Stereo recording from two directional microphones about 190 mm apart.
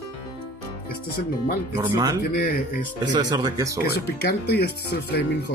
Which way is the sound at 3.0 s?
20° right (ahead or behind).